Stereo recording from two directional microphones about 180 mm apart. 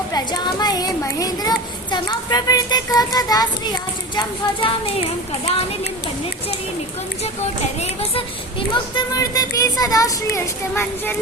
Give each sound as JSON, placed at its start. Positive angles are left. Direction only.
{"t": 0.1, "sound": "a child's voice", "side_deg": 25}
{"t": 8.7, "sound": "speech", "side_deg": 25}